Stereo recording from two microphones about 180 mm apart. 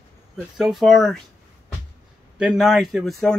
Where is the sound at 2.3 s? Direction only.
5° right (ahead or behind).